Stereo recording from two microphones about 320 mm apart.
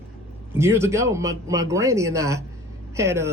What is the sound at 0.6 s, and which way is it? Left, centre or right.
A man's voice, centre.